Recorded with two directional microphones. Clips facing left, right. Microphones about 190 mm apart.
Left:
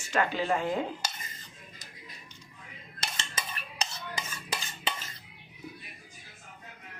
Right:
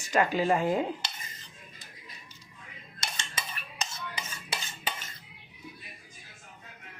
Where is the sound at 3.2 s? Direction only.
35° left (ahead or behind).